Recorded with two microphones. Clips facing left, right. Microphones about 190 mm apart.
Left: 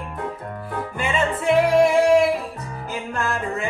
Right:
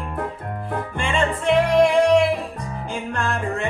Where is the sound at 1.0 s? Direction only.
5° left (ahead or behind).